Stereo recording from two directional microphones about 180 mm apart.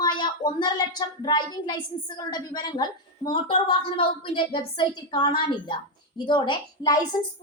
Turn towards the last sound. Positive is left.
turn(degrees=25)  # may be behind; listen again after turning